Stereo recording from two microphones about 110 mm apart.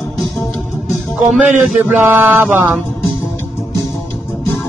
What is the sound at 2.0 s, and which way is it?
Speech, 20° right (ahead or behind).